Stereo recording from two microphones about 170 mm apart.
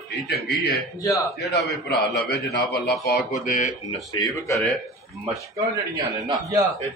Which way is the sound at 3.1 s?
60° left (ahead or behind).